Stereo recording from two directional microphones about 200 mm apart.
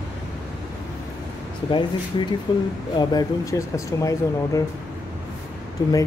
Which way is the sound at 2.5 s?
20° left (ahead or behind).